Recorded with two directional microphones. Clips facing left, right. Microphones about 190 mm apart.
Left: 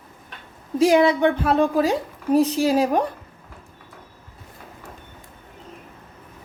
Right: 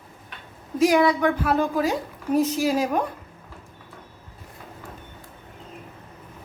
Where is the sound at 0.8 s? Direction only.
25° left (ahead or behind).